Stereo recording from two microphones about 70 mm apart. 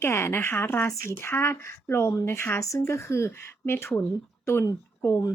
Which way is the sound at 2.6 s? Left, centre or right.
Left.